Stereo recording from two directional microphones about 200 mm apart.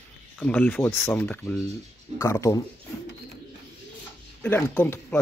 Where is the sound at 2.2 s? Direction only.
15° left (ahead or behind).